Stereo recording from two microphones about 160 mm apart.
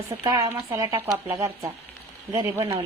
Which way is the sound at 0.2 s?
20° right (ahead or behind).